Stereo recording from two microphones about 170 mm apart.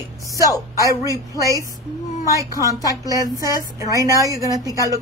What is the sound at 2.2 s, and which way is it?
Speech, 20° left (ahead or behind).